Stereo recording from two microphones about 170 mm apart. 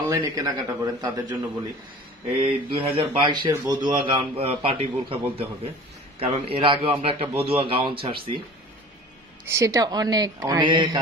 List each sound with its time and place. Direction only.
0.1 s a man's voice: 20° right (ahead or behind)
2.4 s a man's voice: 30° right (ahead or behind)
9.5 s a man's voice: 20° right (ahead or behind)